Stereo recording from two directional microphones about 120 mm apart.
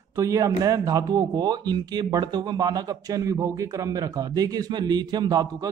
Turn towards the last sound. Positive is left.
turn(degrees=-35)  # may be behind; listen again after turning